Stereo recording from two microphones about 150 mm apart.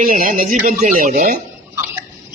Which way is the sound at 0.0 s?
60° right (ahead or behind).